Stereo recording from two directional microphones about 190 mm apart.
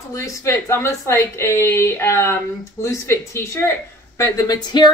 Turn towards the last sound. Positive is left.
turn(degrees=25)  # may be behind; listen again after turning